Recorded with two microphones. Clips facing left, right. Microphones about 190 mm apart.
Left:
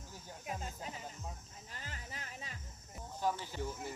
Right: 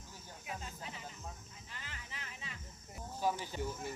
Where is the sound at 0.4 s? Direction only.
40° left (ahead or behind).